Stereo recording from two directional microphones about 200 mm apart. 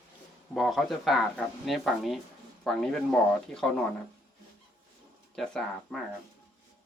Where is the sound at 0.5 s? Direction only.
Centre (ahead or behind).